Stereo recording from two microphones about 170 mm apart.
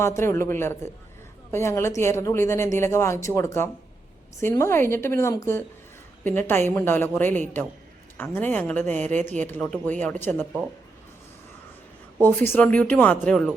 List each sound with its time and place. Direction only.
0.0 s speech: 15° left (ahead or behind)
12.2 s speech: 10° left (ahead or behind)